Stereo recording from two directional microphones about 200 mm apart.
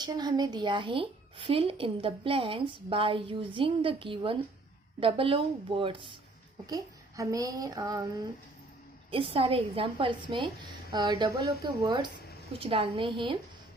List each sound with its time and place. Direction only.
0.0 s a woman's voice: 20° right (ahead or behind)